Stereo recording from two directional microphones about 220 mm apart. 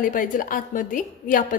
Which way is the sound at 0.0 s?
40° left (ahead or behind).